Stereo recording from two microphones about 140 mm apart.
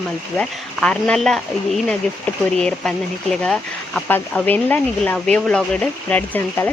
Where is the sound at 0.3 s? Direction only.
5° left (ahead or behind).